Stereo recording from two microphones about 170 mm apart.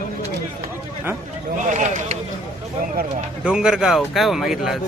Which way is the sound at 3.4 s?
5° right (ahead or behind).